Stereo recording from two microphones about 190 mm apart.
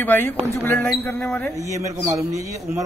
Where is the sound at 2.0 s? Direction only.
15° right (ahead or behind).